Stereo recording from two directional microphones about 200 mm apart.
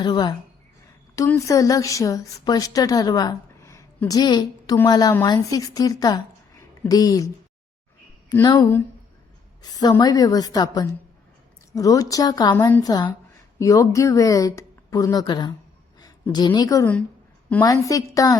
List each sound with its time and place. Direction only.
0.0 s a woman's voice: 20° left (ahead or behind)
8.3 s a woman's voice: 20° left (ahead or behind)